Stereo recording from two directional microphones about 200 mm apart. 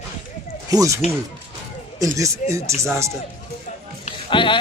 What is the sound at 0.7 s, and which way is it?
Speech, 15° right (ahead or behind).